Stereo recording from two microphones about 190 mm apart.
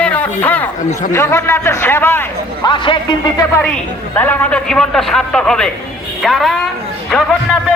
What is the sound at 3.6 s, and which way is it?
A man's voice, 10° left (ahead or behind).